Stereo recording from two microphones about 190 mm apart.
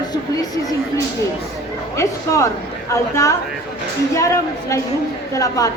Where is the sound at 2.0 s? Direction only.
15° left (ahead or behind).